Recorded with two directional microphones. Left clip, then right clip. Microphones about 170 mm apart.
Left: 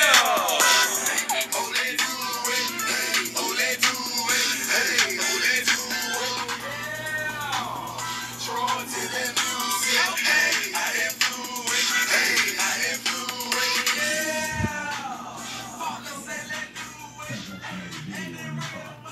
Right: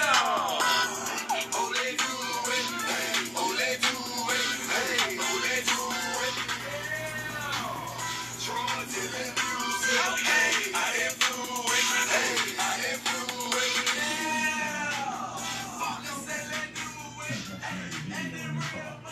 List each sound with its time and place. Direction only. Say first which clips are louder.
0.0 s music: left 6 dB; 30° left (ahead or behind); by 3.3 s 10° left (ahead or behind)
3.3 s music: left 3 dB; 20° left (ahead or behind)
5.7 s music: left 4 dB; 5° left (ahead or behind)
9.3 s music: left 2 dB; 35° left (ahead or behind); by 10.1 s 15° left (ahead or behind)
10.1 s music: left 3 dB; centre (ahead or behind)